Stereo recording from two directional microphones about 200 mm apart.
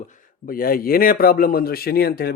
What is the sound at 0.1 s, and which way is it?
A man's voice, 45° left (ahead or behind).